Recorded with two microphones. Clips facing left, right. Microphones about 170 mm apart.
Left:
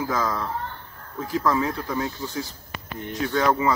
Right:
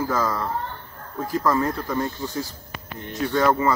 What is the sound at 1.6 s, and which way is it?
Speech, 5° left (ahead or behind).